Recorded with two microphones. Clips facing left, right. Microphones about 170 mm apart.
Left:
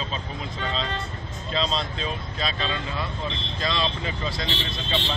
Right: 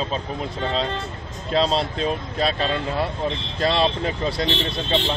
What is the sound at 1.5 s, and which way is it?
Speech, 60° right (ahead or behind).